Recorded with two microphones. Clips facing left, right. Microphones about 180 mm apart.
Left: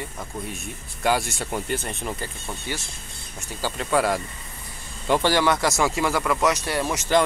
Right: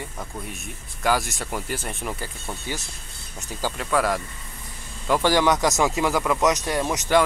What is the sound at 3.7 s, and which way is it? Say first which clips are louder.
Speech: left 1 dB; centre (ahead or behind).